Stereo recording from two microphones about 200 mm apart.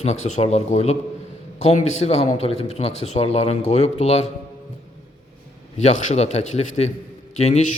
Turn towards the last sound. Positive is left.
turn(degrees=35)  # may be behind; listen again after turning